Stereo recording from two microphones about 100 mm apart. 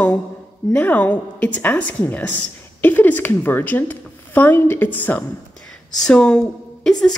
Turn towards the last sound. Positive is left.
turn(degrees=5)  # may be behind; listen again after turning